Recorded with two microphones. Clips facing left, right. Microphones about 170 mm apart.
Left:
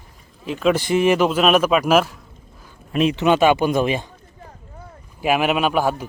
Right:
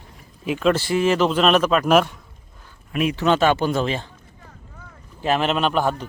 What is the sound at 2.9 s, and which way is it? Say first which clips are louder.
Speech: left 3 dB; 25° left (ahead or behind).